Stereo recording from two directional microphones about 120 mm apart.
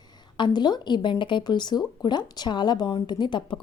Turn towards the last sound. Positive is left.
turn(degrees=40)  # may be behind; listen again after turning